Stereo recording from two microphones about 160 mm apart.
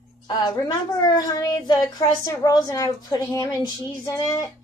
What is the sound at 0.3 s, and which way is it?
A child's voice, 25° left (ahead or behind).